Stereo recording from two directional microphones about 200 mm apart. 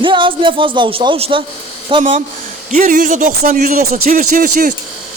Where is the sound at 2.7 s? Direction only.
40° right (ahead or behind).